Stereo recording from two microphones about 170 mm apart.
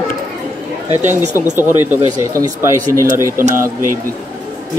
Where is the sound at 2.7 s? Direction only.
50° right (ahead or behind).